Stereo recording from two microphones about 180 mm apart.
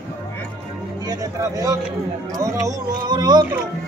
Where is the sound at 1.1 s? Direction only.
20° right (ahead or behind).